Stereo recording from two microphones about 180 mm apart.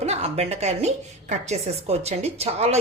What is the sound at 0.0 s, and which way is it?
A woman's voice, 35° right (ahead or behind).